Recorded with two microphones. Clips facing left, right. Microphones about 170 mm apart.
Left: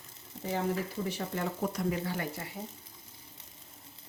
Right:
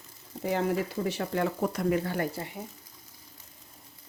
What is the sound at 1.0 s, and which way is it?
Speech, 80° right.